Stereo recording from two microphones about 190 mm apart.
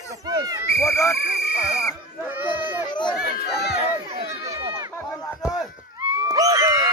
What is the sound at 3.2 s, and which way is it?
Speech, 55° left (ahead or behind).